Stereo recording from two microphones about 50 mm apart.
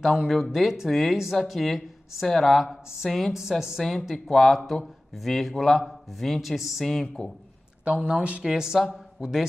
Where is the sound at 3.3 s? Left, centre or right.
Centre.